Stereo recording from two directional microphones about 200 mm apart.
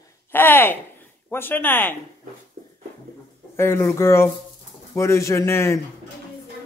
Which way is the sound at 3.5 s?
10° left (ahead or behind).